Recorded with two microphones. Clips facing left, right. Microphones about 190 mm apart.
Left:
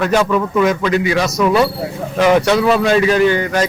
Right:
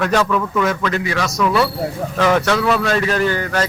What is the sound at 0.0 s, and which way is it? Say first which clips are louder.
A man's voice: left 3 dB; 10° left (ahead or behind).